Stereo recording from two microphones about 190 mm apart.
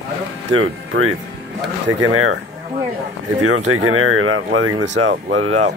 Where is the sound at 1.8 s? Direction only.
90° right.